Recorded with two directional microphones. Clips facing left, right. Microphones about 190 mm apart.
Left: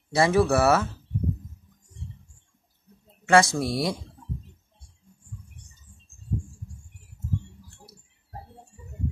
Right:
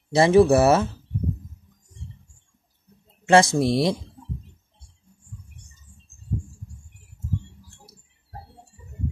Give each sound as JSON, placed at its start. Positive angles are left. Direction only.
{"t": 0.1, "sound": "speech", "side_deg": -20}
{"t": 3.3, "sound": "speech", "side_deg": -20}